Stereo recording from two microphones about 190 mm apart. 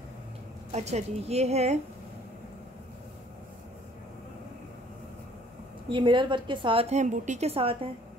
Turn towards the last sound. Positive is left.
turn(degrees=-30)  # may be behind; listen again after turning